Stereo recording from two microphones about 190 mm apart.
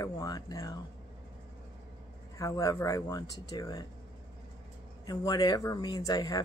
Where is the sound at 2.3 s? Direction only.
15° left (ahead or behind).